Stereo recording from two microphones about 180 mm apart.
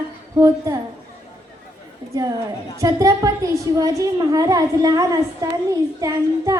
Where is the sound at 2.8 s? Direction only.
20° right (ahead or behind).